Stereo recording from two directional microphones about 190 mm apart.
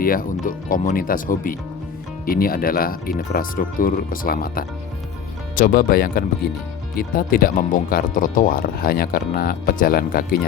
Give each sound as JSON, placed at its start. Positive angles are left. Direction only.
{"t": 0.0, "sound": "speech", "side_deg": 50}